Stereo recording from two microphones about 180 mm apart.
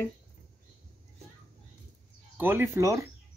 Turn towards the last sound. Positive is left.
turn(degrees=-15)  # may be behind; listen again after turning